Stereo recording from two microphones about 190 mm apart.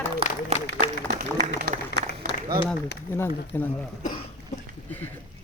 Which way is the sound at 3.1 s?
10° left (ahead or behind).